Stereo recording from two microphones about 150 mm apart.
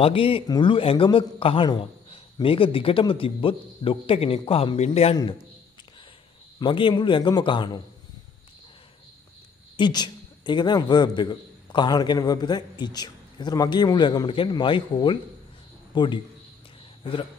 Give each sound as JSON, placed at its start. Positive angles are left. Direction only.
{"t": 0.0, "sound": "a man's voice", "side_deg": 35}
{"t": 6.6, "sound": "a man's voice", "side_deg": 35}
{"t": 9.8, "sound": "a man's voice", "side_deg": 30}